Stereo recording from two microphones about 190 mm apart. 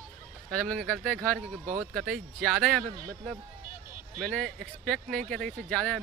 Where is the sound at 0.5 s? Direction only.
5° left (ahead or behind).